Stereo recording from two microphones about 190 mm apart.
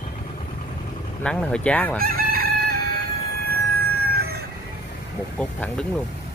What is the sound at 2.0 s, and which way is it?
Chicken, 50° right (ahead or behind).